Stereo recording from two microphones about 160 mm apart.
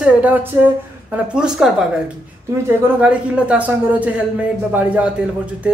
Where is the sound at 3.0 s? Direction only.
10° right (ahead or behind).